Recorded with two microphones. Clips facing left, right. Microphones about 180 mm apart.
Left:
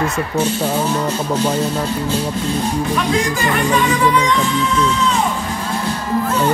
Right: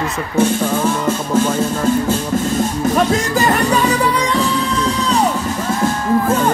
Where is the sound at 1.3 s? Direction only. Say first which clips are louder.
Right 5 dB; 45° right (ahead or behind).